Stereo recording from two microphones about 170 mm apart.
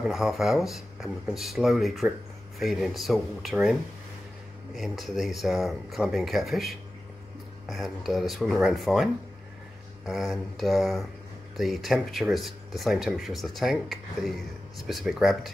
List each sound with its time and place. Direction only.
0.0 s speech: centre (ahead or behind)
4.7 s speech: centre (ahead or behind)